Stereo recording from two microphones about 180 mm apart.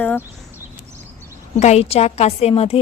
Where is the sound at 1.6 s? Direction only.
35° left (ahead or behind).